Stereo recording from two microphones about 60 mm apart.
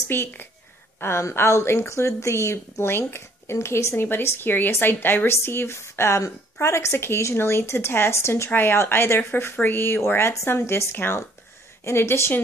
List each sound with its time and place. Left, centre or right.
1.0 s a woman's voice: left
3.9 s a woman's voice: left
10.3 s a woman's voice: left